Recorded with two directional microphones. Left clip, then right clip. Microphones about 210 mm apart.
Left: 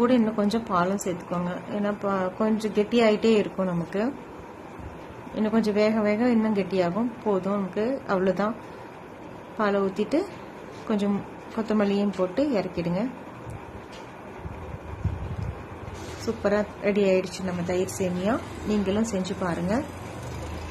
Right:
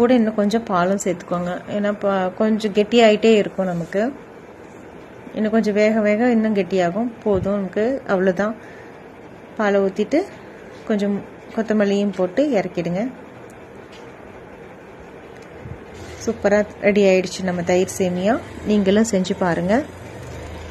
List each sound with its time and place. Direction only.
0.0 s a woman's voice: 10° right (ahead or behind)
5.3 s a woman's voice: 10° right (ahead or behind)
9.6 s a woman's voice: 10° right (ahead or behind)
11.5 s a woman's voice: 10° right (ahead or behind)
16.4 s a woman's voice: 15° right (ahead or behind)